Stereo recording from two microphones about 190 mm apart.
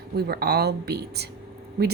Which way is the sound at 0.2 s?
55° right (ahead or behind).